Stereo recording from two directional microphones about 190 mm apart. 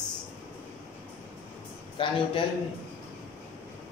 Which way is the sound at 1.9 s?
25° left (ahead or behind).